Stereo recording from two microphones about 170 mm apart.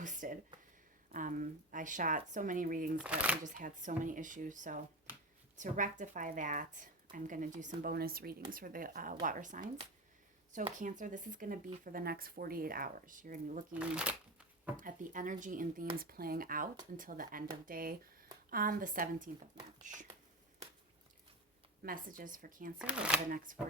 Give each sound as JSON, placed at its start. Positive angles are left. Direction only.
{"t": 0.0, "sound": "a sound", "side_deg": -50}
{"t": 1.1, "sound": "speech", "side_deg": -50}
{"t": 3.0, "sound": "speech", "side_deg": -5}
{"t": 3.4, "sound": "speech", "side_deg": -50}
{"t": 13.7, "sound": "shuffling cards", "side_deg": -5}
{"t": 14.8, "sound": "speech", "side_deg": -50}
{"t": 21.8, "sound": "speech", "side_deg": -55}
{"t": 22.8, "sound": "speech", "side_deg": -5}
{"t": 23.5, "sound": "speech", "side_deg": -55}